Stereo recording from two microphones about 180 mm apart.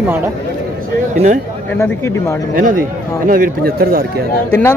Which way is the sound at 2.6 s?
50° right (ahead or behind).